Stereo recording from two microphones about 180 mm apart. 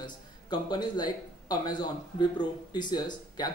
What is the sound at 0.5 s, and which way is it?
Speech, 25° left (ahead or behind).